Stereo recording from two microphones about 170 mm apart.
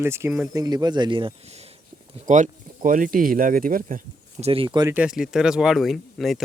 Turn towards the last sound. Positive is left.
turn(degrees=0)  # may be behind; listen again after turning